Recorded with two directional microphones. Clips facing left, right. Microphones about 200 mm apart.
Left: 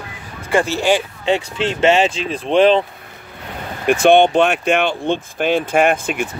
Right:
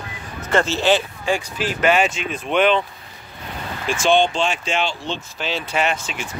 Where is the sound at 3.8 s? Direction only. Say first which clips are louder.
Left 6 dB; 60° left (ahead or behind).